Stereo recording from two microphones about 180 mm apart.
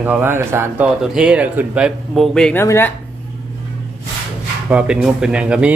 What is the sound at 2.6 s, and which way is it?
Speech, 15° left (ahead or behind).